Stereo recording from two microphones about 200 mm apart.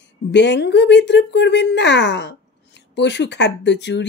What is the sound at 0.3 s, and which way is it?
Speech, 60° left (ahead or behind).